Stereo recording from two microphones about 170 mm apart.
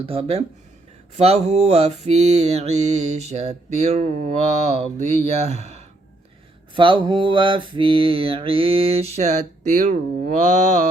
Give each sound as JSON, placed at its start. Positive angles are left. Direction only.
{"t": 0.0, "sound": "mantra", "side_deg": -35}
{"t": 6.7, "sound": "mantra", "side_deg": -30}
{"t": 9.7, "sound": "speech", "side_deg": -45}